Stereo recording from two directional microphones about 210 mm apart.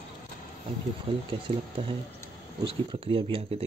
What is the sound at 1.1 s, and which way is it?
Speech, 25° right (ahead or behind).